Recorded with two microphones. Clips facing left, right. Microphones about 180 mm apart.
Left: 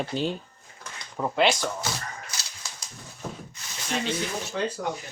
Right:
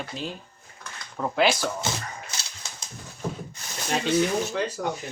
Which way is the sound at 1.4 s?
Centre (ahead or behind).